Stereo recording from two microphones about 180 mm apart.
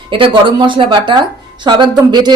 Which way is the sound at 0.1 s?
30° right (ahead or behind).